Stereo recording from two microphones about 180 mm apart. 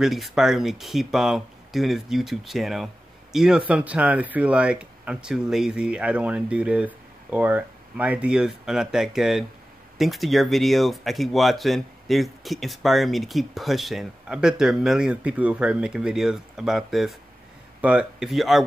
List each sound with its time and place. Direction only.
0.0 s speech: centre (ahead or behind)